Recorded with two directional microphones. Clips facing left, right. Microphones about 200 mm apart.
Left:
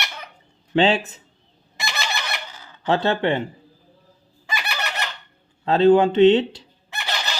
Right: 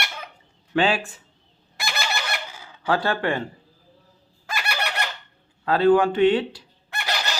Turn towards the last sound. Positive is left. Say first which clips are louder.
# right 1 dB
turn(degrees=0)  # may be behind; listen again after turning